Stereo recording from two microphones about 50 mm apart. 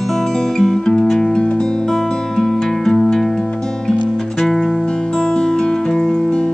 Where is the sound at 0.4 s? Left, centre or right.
Centre.